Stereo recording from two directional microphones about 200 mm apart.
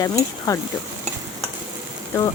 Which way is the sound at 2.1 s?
10° left (ahead or behind).